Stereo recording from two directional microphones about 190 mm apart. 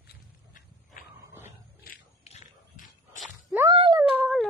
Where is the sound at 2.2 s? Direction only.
40° left (ahead or behind).